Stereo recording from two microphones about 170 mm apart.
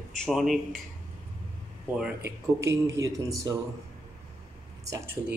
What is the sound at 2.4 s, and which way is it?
Speech, 15° right (ahead or behind).